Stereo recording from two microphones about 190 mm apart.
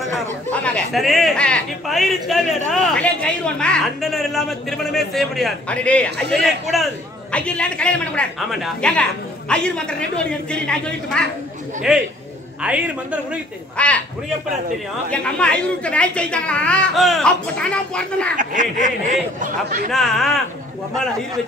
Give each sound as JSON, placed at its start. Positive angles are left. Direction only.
{"t": 0.5, "sound": "a man's voice", "side_deg": 5}
{"t": 7.3, "sound": "a man's voice", "side_deg": 5}
{"t": 13.7, "sound": "speech", "side_deg": 5}
{"t": 15.0, "sound": "a man's voice", "side_deg": 5}
{"t": 18.3, "sound": "speech", "side_deg": -45}
{"t": 19.9, "sound": "a man's voice", "side_deg": 0}